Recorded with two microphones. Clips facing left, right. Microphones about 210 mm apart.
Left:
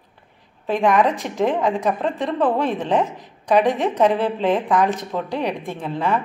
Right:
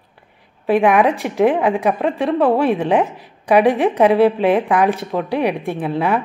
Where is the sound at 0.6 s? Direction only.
10° right (ahead or behind).